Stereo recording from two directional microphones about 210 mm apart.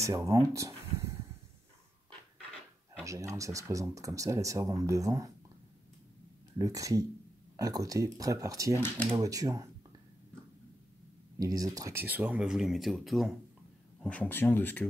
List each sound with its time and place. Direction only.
0.0 s speech: 15° right (ahead or behind)
3.0 s speech: 15° right (ahead or behind)
6.6 s speech: 15° right (ahead or behind)
11.3 s speech: 15° right (ahead or behind); by 14.9 s 10° left (ahead or behind)